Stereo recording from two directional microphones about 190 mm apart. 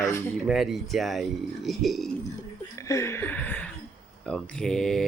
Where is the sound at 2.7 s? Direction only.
15° left (ahead or behind).